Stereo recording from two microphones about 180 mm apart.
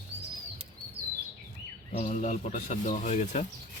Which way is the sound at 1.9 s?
45° left (ahead or behind).